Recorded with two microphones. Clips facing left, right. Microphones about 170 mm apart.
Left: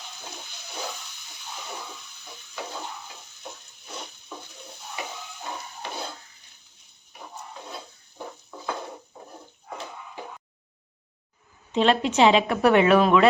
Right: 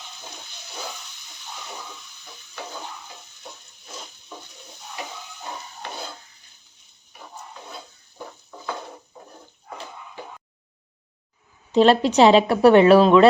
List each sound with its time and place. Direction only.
11.7 s a woman's voice: 35° right (ahead or behind)